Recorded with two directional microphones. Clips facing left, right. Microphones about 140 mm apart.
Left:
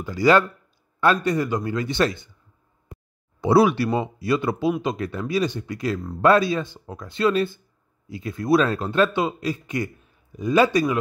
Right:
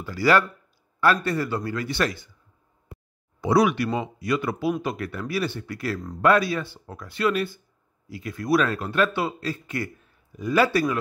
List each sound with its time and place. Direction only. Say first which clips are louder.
0.0 s a man's voice: left 3 dB; 20° left (ahead or behind)
3.3 s a man's voice: left 3 dB; 30° left (ahead or behind)